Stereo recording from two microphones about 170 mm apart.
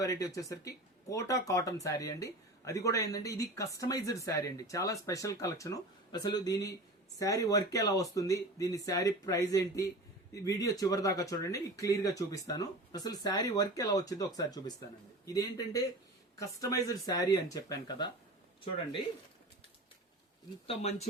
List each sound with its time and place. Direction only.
0.0 s speech: 20° left (ahead or behind)
20.7 s speech: 35° left (ahead or behind)